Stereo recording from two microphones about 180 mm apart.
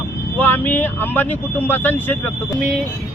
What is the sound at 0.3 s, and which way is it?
Speech, 10° left (ahead or behind).